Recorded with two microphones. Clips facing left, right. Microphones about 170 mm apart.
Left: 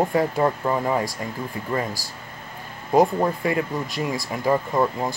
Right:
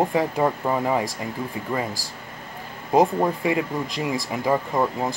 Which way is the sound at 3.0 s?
15° right (ahead or behind).